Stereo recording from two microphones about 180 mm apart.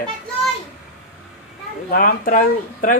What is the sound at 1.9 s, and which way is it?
Speech, 50° left (ahead or behind).